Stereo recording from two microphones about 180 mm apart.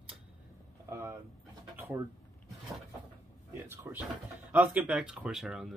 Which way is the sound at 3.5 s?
15° right (ahead or behind).